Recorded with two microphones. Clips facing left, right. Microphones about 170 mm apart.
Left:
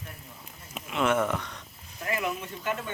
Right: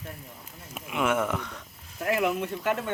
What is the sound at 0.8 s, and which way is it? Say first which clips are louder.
Speech: left 1 dB; 10° right (ahead or behind).